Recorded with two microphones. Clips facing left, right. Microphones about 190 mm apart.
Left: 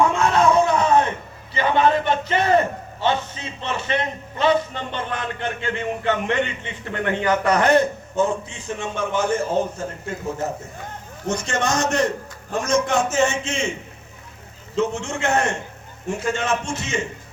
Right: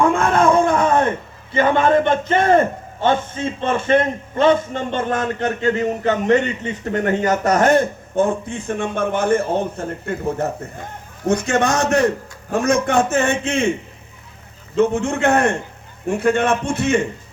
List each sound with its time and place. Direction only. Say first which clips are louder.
0.0 s a sound: right 2 dB; 50° right (ahead or behind)
1.5 s a man's voice: right 4 dB; 50° right (ahead or behind)
14.8 s a man's voice: right 6 dB; 55° right (ahead or behind)